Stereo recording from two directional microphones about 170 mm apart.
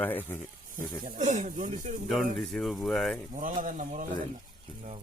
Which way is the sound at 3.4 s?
50° right (ahead or behind).